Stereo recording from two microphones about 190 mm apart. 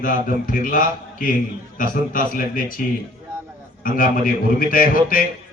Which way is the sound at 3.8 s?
45° left (ahead or behind).